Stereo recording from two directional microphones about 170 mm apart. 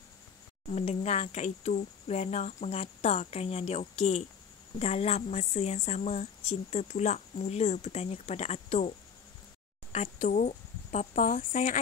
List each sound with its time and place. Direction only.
0.7 s a woman's voice: 40° left (ahead or behind)
9.9 s speech: 45° left (ahead or behind)